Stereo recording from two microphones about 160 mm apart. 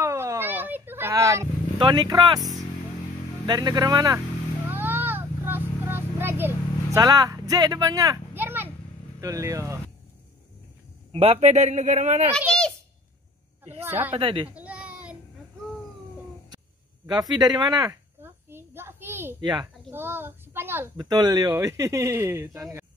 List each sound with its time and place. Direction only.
0.0 s a sound: 20° right (ahead or behind)
1.8 s speech: 25° right (ahead or behind)
3.4 s speech: 25° right (ahead or behind)
4.6 s vehicle: 10° right (ahead or behind)
7.0 s speech: 25° right (ahead or behind)
11.1 s a man's voice: 35° right (ahead or behind)
13.8 s a woman's voice: 10° right (ahead or behind)
14.1 s speech: 35° right (ahead or behind)
14.5 s a sound: 10° right (ahead or behind)
17.0 s speech: 25° right (ahead or behind)
18.2 s a sound: 15° right (ahead or behind)
19.4 s speech: 25° right (ahead or behind)
19.9 s a child's voice: 15° right (ahead or behind)